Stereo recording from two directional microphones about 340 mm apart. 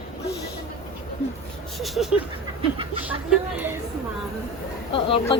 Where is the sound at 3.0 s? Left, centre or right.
Centre.